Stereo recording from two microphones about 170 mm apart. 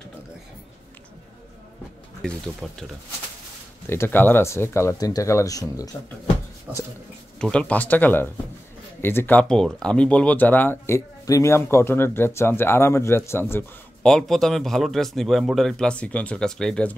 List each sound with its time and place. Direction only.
2.2 s speech: 5° left (ahead or behind)
3.9 s speech: 15° left (ahead or behind)
6.7 s speech: 10° right (ahead or behind)
7.3 s speech: 5° left (ahead or behind)